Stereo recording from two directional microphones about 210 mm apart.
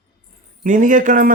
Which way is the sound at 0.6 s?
40° right (ahead or behind).